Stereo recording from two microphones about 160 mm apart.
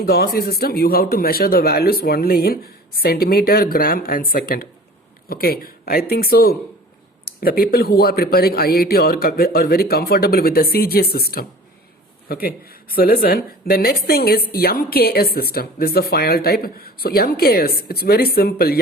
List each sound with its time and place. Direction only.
0.0 s speech: 75° left (ahead or behind)